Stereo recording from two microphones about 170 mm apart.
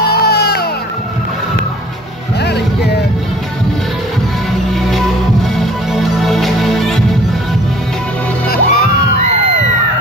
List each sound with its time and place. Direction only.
0.1 s music: 70° left (ahead or behind)
2.4 s music: 75° left (ahead or behind)
4.9 s music: centre (ahead or behind)
8.5 s music: 65° left (ahead or behind)